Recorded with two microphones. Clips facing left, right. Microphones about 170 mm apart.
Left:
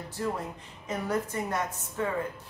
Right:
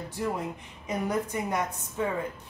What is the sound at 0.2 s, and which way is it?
Speech, 15° right (ahead or behind).